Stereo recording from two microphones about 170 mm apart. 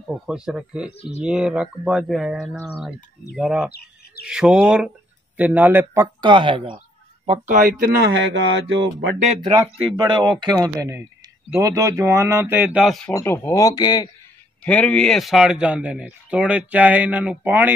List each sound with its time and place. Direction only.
0.0 s speech: 5° right (ahead or behind)
3.7 s speech: 65° left (ahead or behind)
4.3 s a man's voice: 5° right (ahead or behind)
6.2 s speech: 30° right (ahead or behind)
7.2 s speech: 55° right (ahead or behind); by 8.2 s 75° right (ahead or behind)
8.6 s speech: 90° right
9.9 s a man's voice: 25° right (ahead or behind); by 13.1 s centre (ahead or behind)
13.1 s speech: 15° left (ahead or behind)
14.6 s a man's voice: 5° left (ahead or behind); by 17.7 s 10° right (ahead or behind)